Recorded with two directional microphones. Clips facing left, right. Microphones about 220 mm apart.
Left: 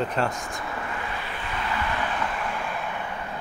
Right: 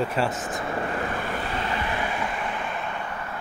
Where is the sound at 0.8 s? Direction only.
40° right (ahead or behind).